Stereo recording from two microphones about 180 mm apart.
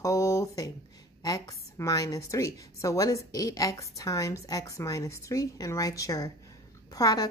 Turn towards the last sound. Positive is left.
turn(degrees=20)  # may be behind; listen again after turning